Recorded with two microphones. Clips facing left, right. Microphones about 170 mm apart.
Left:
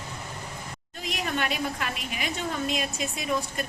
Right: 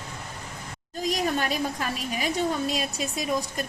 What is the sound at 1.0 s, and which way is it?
Speech, 35° right (ahead or behind).